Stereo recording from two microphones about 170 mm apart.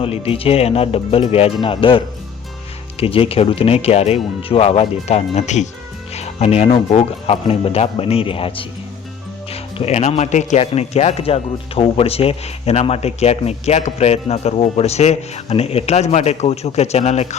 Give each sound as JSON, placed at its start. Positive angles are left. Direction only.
{"t": 0.0, "sound": "speech", "side_deg": 35}
{"t": 3.0, "sound": "speech", "side_deg": 35}